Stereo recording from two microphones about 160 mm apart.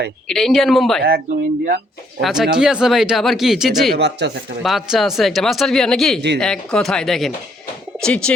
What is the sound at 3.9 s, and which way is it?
Speech, 90° right.